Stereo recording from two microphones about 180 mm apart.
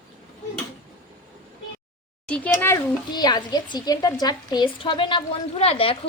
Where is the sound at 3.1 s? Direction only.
25° left (ahead or behind).